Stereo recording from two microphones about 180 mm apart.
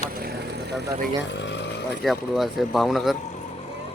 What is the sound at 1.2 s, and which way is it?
Vehicle, 85° left.